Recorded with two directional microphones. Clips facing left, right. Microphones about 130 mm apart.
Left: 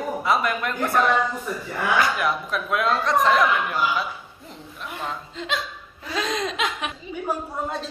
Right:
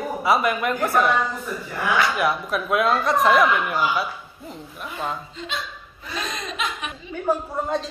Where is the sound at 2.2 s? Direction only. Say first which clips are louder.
Right 2 dB; 5° right (ahead or behind).